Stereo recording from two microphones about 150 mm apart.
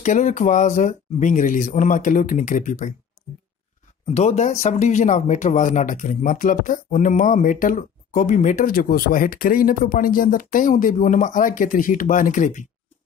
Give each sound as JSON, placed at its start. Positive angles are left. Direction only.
{"t": 0.0, "sound": "speech", "side_deg": 55}
{"t": 4.0, "sound": "speech", "side_deg": 45}